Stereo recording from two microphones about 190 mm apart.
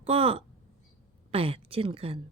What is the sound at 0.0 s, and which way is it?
A woman's voice, 30° right (ahead or behind).